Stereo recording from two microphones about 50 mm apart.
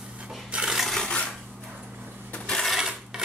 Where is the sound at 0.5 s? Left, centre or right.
Centre.